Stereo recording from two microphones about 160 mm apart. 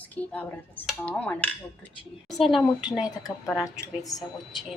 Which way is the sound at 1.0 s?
10° left (ahead or behind).